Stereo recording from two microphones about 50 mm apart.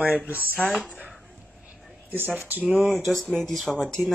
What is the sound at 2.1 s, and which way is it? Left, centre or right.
Speech, right.